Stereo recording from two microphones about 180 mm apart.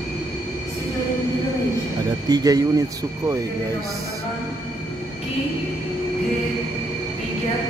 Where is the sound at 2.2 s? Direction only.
20° right (ahead or behind).